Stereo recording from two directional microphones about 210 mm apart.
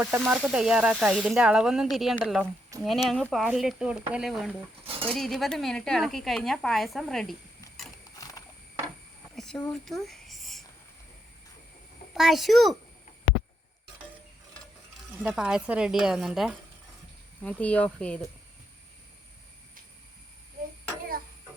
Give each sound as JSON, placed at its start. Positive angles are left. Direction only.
{"t": 0.0, "sound": "speech", "side_deg": -5}
{"t": 8.2, "sound": "wild animals", "side_deg": 20}
{"t": 9.3, "sound": "a sound", "side_deg": 0}
{"t": 12.1, "sound": "speech", "side_deg": 0}
{"t": 15.2, "sound": "speech", "side_deg": -5}